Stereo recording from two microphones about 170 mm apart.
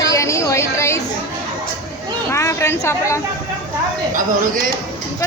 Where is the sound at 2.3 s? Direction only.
15° left (ahead or behind).